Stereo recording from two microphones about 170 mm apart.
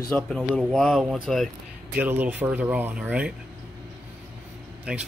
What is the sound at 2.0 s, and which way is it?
Speech, 10° right (ahead or behind).